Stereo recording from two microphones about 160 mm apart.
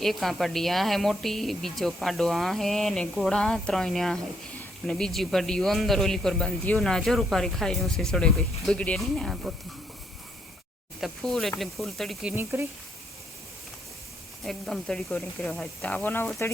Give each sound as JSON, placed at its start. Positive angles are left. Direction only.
{"t": 0.0, "sound": "speech", "side_deg": 0}
{"t": 11.0, "sound": "speech", "side_deg": 0}
{"t": 12.3, "sound": "speech", "side_deg": -15}
{"t": 14.4, "sound": "speech", "side_deg": 5}